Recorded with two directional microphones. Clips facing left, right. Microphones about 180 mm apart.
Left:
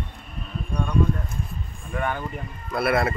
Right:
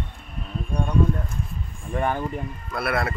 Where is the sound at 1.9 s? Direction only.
30° right (ahead or behind).